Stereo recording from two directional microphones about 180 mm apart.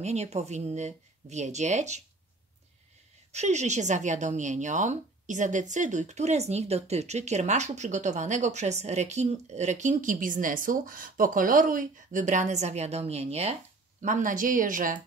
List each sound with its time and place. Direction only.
0.0 s speech: 40° right (ahead or behind)
3.3 s speech: 40° right (ahead or behind)
14.0 s speech: 45° right (ahead or behind)